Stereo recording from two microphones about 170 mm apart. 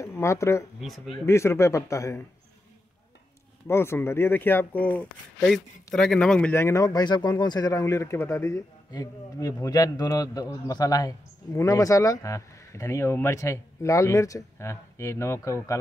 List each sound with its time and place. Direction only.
0.0 s speech: 15° left (ahead or behind)
0.7 s speech: centre (ahead or behind)
1.2 s speech: 15° left (ahead or behind)
3.6 s speech: 15° left (ahead or behind)